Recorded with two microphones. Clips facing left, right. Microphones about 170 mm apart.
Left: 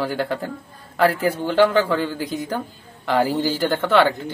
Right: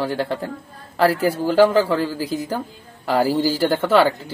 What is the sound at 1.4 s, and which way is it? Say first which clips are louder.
Speech: right 2 dB; 5° right (ahead or behind).